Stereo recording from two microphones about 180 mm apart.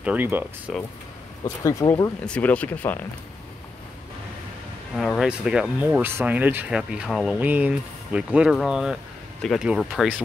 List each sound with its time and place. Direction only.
0.0 s speech: 10° right (ahead or behind)
1.4 s speech: 15° left (ahead or behind)
2.2 s speech: 5° left (ahead or behind)
4.9 s speech: centre (ahead or behind)